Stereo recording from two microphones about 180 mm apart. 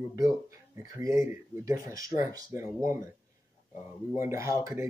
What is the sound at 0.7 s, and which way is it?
Speech, 15° right (ahead or behind).